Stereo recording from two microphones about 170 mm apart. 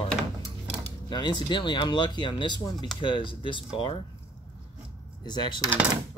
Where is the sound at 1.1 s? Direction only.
25° left (ahead or behind).